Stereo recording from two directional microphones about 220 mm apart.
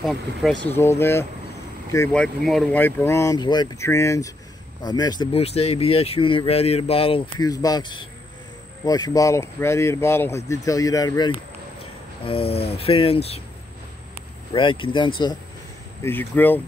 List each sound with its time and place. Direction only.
0.0 s speech: centre (ahead or behind)
0.7 s speech: 10° left (ahead or behind); by 13.4 s 25° left (ahead or behind)
14.5 s speech: 25° left (ahead or behind)
16.0 s speech: 10° left (ahead or behind)